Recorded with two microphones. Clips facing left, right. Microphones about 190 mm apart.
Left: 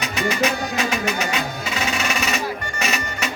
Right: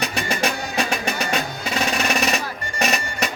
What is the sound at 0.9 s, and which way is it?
Music, 35° right (ahead or behind).